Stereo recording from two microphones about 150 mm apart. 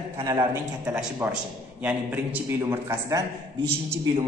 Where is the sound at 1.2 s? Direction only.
15° right (ahead or behind).